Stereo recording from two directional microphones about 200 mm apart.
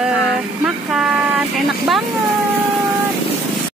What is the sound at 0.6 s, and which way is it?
Speech, 5° right (ahead or behind).